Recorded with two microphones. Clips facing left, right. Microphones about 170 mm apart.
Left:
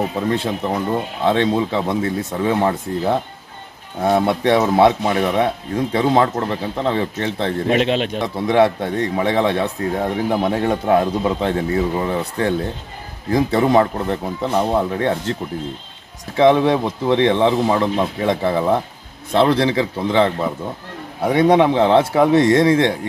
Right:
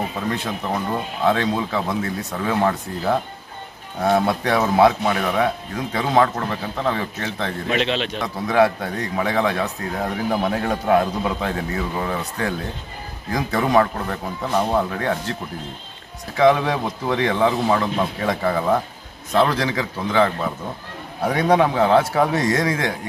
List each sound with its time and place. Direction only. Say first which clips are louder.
1.2 s a man's voice: left 3 dB; 25° left (ahead or behind)
7.7 s a man's voice: left 4 dB; 45° left (ahead or behind)
8.2 s a man's voice: left 2 dB; 25° left (ahead or behind)
16.3 s a man's voice: left 3 dB; 25° left (ahead or behind)